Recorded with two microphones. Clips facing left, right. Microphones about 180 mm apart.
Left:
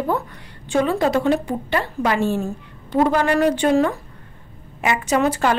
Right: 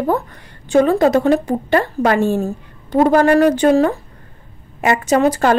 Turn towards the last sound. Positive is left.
turn(degrees=-40)  # may be behind; listen again after turning